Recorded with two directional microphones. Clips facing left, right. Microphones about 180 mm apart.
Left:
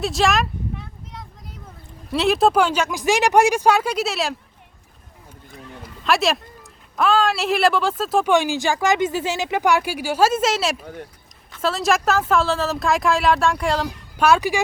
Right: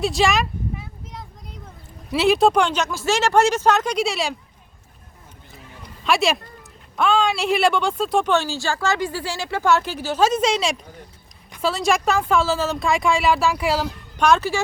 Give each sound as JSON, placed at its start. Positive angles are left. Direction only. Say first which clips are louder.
{"t": 0.0, "sound": "a sound", "louder": "even", "side_deg": 0}
{"t": 2.1, "sound": "speech", "louder": "even", "side_deg": 0}
{"t": 5.8, "sound": "a sound", "louder": "even", "side_deg": 0}
{"t": 6.9, "sound": "speech", "louder": "left 1 dB", "side_deg": 0}
{"t": 8.3, "sound": "speech", "louder": "left 3 dB", "side_deg": 15}
{"t": 14.2, "sound": "speech", "louder": "left 1 dB", "side_deg": 10}